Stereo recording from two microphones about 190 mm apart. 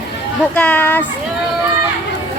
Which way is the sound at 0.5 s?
5° left (ahead or behind).